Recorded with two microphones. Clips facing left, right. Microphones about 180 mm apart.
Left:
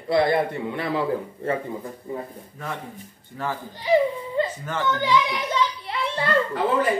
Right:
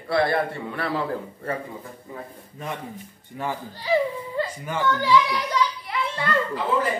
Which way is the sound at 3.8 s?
20° left (ahead or behind).